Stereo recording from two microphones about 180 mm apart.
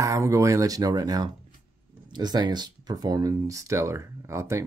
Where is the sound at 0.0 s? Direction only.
15° right (ahead or behind).